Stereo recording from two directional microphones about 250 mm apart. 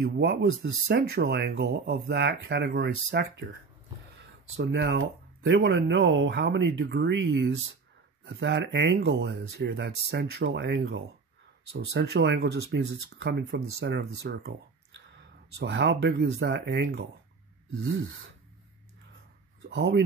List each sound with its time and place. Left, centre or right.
0.0 s speech: right
17.7 s speech: right
19.7 s speech: right